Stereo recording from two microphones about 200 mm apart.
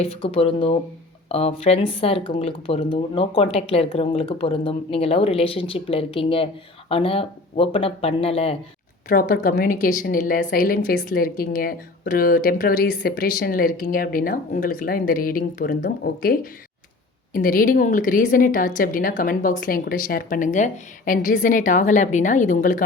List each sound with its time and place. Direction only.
0.0 s speech: 30° left (ahead or behind)
9.0 s a woman's voice: 45° left (ahead or behind)